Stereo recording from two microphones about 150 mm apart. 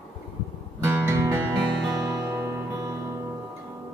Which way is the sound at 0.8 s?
15° right (ahead or behind).